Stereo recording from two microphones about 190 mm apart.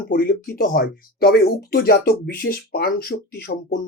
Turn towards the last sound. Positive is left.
turn(degrees=50)  # may be behind; listen again after turning